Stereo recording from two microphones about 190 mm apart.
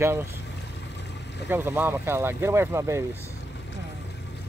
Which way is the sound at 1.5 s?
10° right (ahead or behind).